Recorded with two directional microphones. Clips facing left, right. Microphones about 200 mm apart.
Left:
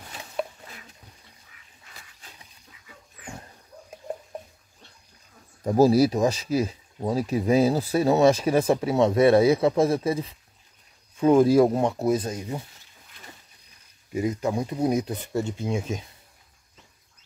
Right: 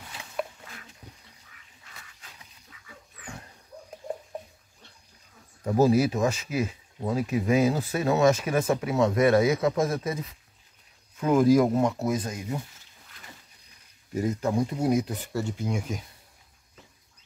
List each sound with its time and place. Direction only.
5.7 s speech: 35° left (ahead or behind)
14.1 s speech: 15° left (ahead or behind)